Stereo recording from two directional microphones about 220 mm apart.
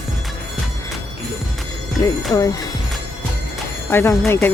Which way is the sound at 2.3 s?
15° left (ahead or behind).